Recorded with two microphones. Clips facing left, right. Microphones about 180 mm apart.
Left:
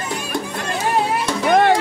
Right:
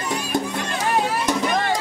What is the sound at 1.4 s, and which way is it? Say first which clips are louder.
Music: left 8 dB; 65° left (ahead or behind).